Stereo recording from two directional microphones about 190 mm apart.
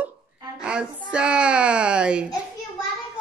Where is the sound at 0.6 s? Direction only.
5° right (ahead or behind).